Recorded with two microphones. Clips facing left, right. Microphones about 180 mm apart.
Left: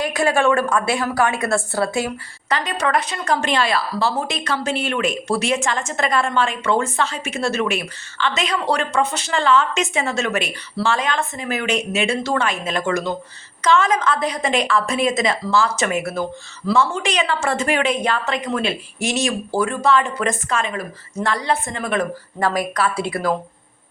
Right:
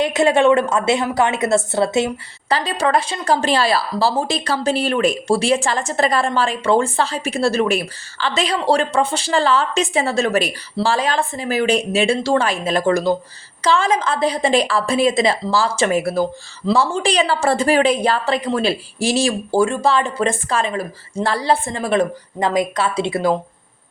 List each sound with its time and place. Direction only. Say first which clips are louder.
0.0 s a woman's voice: right 4 dB; 25° right (ahead or behind)
22.4 s speech: right 2 dB; 20° right (ahead or behind)